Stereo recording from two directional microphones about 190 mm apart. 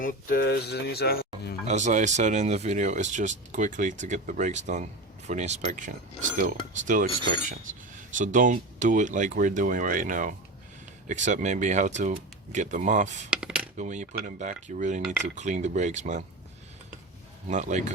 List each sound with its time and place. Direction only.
0.0 s speech: 45° left (ahead or behind)
0.4 s speech: 60° left (ahead or behind)
1.6 s speech: 40° right (ahead or behind)
8.2 s speech: 40° right (ahead or behind)
13.3 s coin: 5° right (ahead or behind)
13.7 s speech: 40° right (ahead or behind)
17.5 s speech: 40° right (ahead or behind)